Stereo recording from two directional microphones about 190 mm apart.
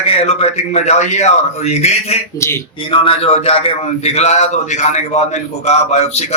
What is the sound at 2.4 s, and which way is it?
Speech, 15° left (ahead or behind).